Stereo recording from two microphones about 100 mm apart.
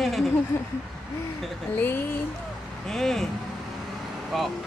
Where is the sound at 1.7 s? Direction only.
20° left (ahead or behind).